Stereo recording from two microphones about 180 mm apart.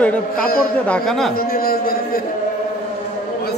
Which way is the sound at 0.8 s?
5° left (ahead or behind).